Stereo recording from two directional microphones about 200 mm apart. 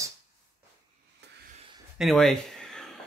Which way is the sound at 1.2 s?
60° right (ahead or behind).